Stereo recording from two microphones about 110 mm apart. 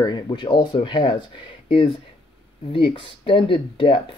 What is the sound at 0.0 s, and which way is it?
Speech, 45° left (ahead or behind).